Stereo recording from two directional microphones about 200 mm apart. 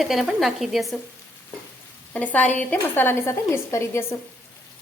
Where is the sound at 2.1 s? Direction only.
10° left (ahead or behind).